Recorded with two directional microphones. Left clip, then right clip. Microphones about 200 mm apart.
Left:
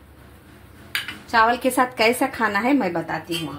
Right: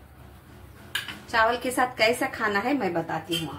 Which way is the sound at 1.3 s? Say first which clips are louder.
Left 5 dB; 25° left (ahead or behind).